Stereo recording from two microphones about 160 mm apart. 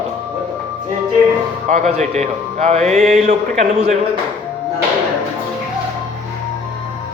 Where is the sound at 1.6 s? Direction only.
50° right (ahead or behind).